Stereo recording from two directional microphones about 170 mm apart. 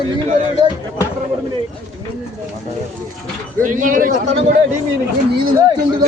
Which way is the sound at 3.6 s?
50° right (ahead or behind).